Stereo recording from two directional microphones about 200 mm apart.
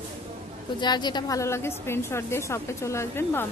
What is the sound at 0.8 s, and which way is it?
A woman's voice, 20° left (ahead or behind).